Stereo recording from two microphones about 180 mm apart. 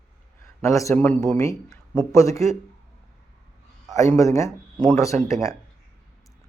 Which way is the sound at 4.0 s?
15° left (ahead or behind).